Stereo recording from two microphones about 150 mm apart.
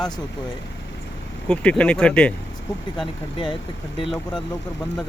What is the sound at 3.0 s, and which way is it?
Speech, 30° left (ahead or behind).